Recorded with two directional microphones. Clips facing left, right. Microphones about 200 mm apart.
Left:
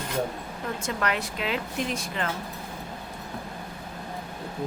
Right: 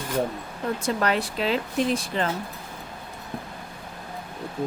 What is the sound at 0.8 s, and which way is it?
Speech, 35° right (ahead or behind).